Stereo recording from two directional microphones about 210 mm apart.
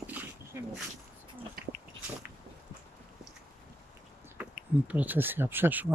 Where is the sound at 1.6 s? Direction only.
45° right (ahead or behind).